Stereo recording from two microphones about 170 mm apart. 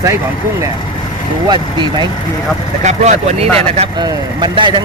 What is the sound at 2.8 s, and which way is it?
Speech, 45° right (ahead or behind).